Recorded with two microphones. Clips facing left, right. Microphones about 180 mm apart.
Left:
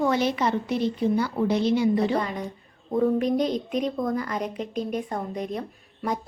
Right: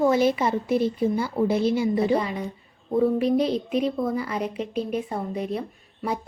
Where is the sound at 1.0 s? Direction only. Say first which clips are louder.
Even; 10° right (ahead or behind).